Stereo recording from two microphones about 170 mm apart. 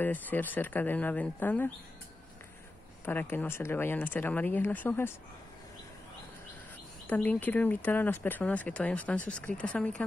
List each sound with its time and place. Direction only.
0.0 s speech: 10° left (ahead or behind)
3.1 s speech: 10° left (ahead or behind)
7.1 s speech: 10° left (ahead or behind)